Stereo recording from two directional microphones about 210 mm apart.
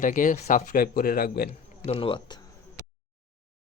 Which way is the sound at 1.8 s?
25° left (ahead or behind).